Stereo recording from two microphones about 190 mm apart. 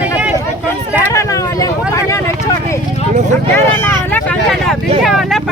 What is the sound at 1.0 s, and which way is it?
Vehicle, 15° left (ahead or behind).